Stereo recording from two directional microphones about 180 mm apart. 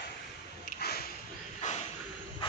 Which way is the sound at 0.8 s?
60° left (ahead or behind).